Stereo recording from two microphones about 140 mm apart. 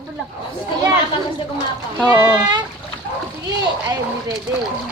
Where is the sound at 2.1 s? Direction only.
25° right (ahead or behind).